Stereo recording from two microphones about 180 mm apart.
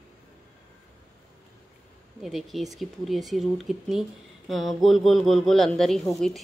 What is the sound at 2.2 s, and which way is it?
A woman's voice, centre (ahead or behind).